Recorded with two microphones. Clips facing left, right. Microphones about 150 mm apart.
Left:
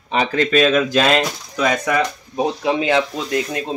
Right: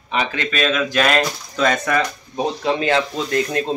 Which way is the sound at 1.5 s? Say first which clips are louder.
Even; 15° left (ahead or behind).